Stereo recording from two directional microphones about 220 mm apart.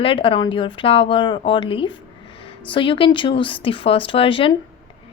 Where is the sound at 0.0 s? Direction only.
25° left (ahead or behind).